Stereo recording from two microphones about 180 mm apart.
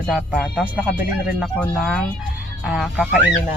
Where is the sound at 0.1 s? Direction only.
Centre (ahead or behind).